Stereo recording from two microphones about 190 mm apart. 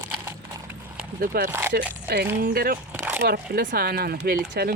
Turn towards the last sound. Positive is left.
turn(degrees=-55)  # may be behind; listen again after turning